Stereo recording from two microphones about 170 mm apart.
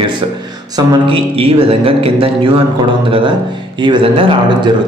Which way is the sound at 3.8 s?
30° right (ahead or behind).